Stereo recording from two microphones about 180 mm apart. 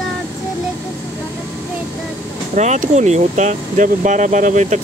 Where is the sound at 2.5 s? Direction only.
40° right (ahead or behind).